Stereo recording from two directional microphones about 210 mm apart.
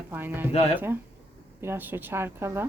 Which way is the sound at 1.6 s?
10° right (ahead or behind).